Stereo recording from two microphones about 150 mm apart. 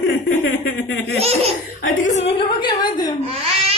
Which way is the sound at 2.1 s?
45° left (ahead or behind).